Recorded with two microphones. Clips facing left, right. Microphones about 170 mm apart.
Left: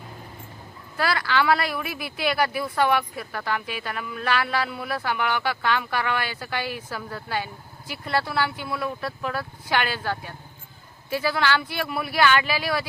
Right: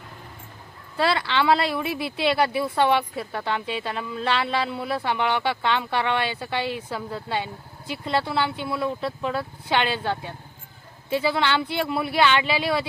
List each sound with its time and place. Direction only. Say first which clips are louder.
0.9 s speech: right 1 dB; 25° right (ahead or behind)